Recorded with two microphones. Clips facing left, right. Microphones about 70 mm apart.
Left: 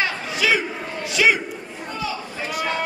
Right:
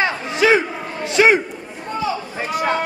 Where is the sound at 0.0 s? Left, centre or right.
Right.